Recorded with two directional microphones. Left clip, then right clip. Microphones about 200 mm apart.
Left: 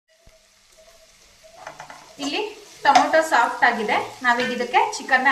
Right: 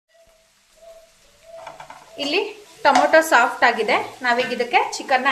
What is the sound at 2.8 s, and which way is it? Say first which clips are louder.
A woman's voice: right 2 dB; 45° right (ahead or behind).